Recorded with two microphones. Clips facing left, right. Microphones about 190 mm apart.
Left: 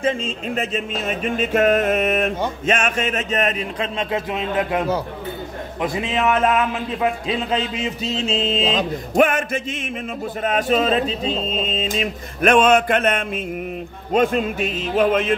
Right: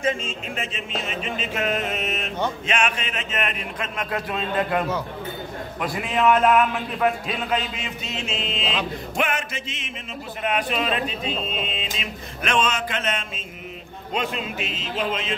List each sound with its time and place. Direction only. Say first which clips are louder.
0.0 s speech: left 4 dB; 35° left (ahead or behind)
4.0 s speech: left 2 dB; 20° left (ahead or behind)
7.0 s music: left 1 dB; 25° left (ahead or behind); by 9.8 s 50° left (ahead or behind)
10.4 s speech: left 6 dB; 40° left (ahead or behind)